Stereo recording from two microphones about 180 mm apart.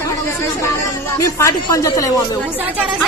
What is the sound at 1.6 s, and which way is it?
Speech, 20° left (ahead or behind).